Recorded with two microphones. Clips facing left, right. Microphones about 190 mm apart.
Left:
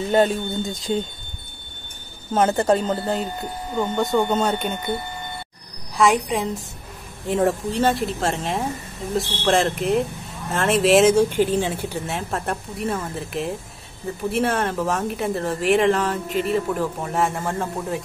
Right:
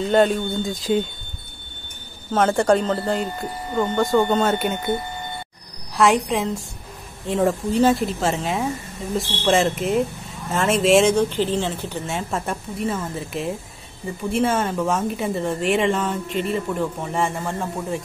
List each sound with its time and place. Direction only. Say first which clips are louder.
0.1 s speech: right 1 dB; centre (ahead or behind)
2.3 s speech: right 1 dB; 5° left (ahead or behind)
5.9 s speech: right 1 dB; centre (ahead or behind)